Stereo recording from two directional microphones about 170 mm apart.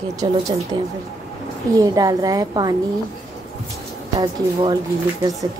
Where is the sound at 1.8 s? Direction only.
20° right (ahead or behind).